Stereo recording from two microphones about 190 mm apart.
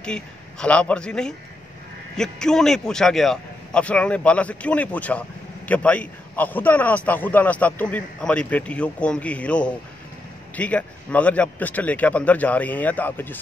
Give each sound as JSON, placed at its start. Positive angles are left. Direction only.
{"t": 0.0, "sound": "a man's voice", "side_deg": 5}